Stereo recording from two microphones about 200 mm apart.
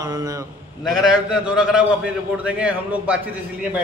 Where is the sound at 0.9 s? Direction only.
Centre (ahead or behind).